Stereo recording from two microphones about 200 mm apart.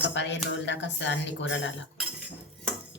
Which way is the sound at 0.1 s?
65° left (ahead or behind).